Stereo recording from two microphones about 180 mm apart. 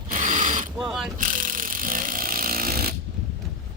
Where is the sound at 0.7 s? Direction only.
Centre (ahead or behind).